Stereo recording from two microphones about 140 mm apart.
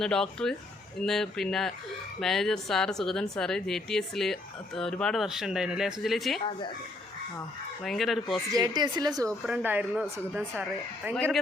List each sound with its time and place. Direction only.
0.0 s a woman's voice: 5° left (ahead or behind)
7.9 s a woman's voice: centre (ahead or behind)
8.5 s speech: 30° right (ahead or behind)
9.5 s speech: 10° right (ahead or behind)